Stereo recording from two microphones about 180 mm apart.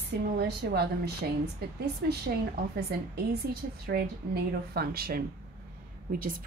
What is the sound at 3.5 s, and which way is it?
A woman's voice, 60° right (ahead or behind).